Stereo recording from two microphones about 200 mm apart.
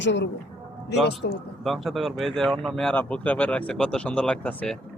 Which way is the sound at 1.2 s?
50° left (ahead or behind).